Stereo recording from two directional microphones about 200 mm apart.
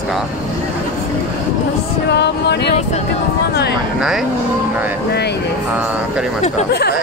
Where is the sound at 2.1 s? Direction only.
55° left (ahead or behind).